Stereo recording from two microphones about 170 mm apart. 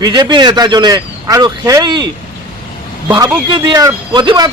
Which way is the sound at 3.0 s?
25° right (ahead or behind).